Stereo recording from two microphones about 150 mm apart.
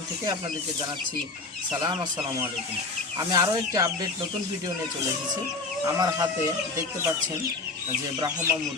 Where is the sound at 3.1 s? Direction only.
25° right (ahead or behind).